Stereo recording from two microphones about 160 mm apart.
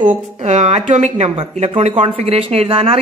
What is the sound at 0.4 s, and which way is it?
Speech, 45° right (ahead or behind).